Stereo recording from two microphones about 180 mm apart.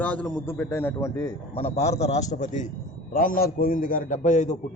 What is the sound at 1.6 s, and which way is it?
A man's voice, 35° left (ahead or behind).